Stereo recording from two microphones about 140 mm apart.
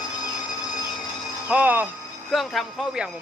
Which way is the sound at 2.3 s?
Centre (ahead or behind).